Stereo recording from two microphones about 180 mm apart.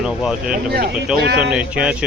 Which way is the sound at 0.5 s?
55° right (ahead or behind).